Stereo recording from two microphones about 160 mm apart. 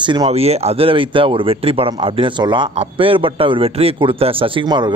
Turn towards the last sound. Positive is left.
turn(degrees=-30)  # may be behind; listen again after turning